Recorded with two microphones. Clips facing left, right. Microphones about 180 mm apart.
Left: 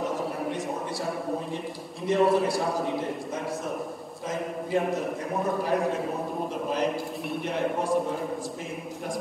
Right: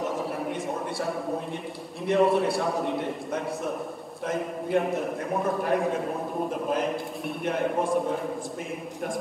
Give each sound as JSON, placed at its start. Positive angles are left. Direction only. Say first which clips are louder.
{"t": 2.0, "sound": "a man's voice", "louder": "even", "side_deg": 0}
{"t": 4.3, "sound": "a man's voice", "louder": "right 2 dB", "side_deg": 0}